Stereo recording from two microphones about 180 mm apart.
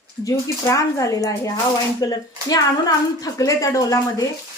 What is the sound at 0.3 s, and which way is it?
A woman's voice, 20° left (ahead or behind).